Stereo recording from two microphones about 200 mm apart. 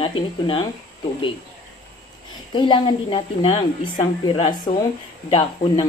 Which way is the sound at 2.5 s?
20° left (ahead or behind).